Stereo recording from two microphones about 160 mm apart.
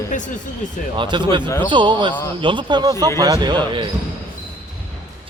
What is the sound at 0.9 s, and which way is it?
Speech, 30° right (ahead or behind).